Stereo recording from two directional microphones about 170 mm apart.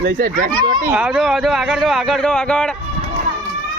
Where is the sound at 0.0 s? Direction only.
70° right (ahead or behind).